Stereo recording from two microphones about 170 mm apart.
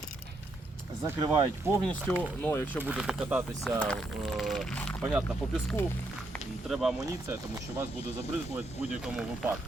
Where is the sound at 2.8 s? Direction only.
5° right (ahead or behind).